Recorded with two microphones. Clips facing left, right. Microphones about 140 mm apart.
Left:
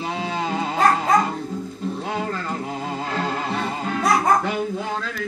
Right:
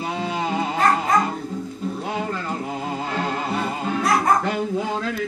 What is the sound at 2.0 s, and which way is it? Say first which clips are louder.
Music: even; 15° right (ahead or behind).